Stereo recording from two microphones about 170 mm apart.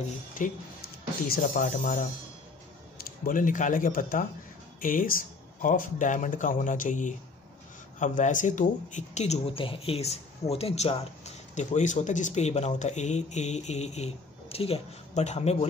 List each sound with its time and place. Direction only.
1.2 s speech: 60° left (ahead or behind)
3.3 s speech: 50° left (ahead or behind)